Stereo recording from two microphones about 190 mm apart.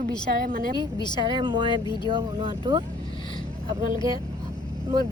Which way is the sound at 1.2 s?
25° right (ahead or behind).